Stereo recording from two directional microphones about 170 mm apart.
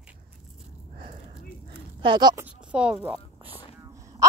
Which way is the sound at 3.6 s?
15° right (ahead or behind).